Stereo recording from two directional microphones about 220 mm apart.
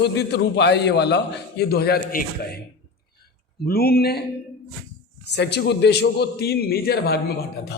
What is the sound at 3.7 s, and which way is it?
Speech, 45° left (ahead or behind).